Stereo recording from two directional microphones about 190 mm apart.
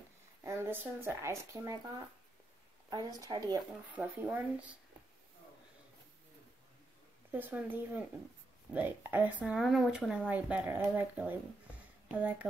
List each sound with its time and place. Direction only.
0.4 s speech: 15° right (ahead or behind)
3.9 s speech: 5° right (ahead or behind)
7.3 s speech: 10° right (ahead or behind)